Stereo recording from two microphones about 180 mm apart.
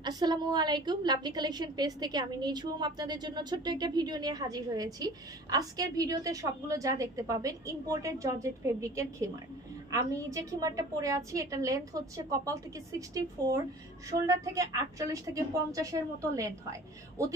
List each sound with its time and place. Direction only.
0.0 s a woman's voice: 25° right (ahead or behind)
14.2 s a woman's voice: 20° right (ahead or behind)